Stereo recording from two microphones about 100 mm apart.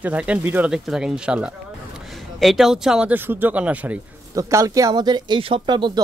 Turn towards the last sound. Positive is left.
turn(degrees=-50)  # may be behind; listen again after turning